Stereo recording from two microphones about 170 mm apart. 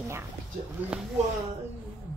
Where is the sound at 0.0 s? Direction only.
15° right (ahead or behind).